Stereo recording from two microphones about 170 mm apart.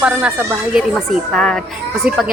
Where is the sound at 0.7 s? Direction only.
Centre (ahead or behind).